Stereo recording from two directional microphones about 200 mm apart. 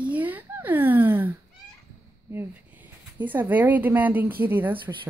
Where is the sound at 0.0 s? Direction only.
10° right (ahead or behind).